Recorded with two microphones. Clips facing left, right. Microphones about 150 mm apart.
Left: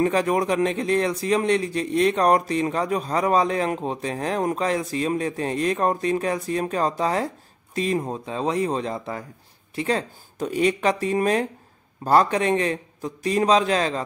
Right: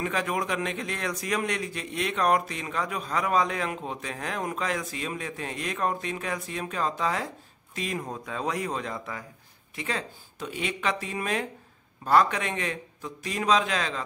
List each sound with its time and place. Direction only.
0.0 s speech: 35° left (ahead or behind)